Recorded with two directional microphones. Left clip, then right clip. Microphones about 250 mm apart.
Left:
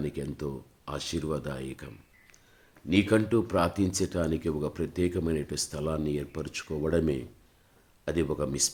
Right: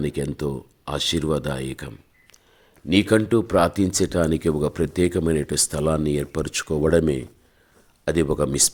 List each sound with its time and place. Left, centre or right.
0.0 s speech: right